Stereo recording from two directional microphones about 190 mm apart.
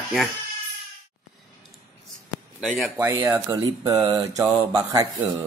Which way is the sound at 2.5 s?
Centre (ahead or behind).